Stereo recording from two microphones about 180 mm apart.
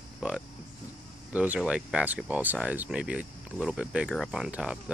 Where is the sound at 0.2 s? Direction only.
5° right (ahead or behind).